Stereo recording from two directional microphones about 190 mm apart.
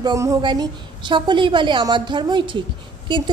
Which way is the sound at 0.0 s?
15° right (ahead or behind).